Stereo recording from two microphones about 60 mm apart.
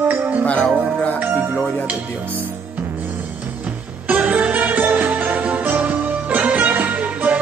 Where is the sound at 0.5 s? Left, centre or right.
Left.